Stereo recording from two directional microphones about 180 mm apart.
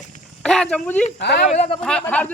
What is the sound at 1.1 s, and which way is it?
Speech, 70° left (ahead or behind).